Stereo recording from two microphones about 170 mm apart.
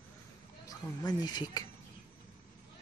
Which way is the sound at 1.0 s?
25° left (ahead or behind).